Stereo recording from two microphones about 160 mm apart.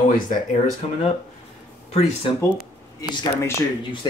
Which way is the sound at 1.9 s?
40° left (ahead or behind).